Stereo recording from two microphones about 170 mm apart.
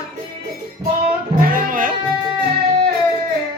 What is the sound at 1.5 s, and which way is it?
Music, 55° right (ahead or behind).